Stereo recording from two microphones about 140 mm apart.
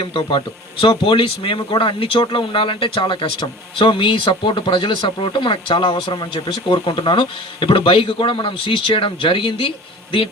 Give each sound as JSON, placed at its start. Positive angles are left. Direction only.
{"t": 0.0, "sound": "speech", "side_deg": 40}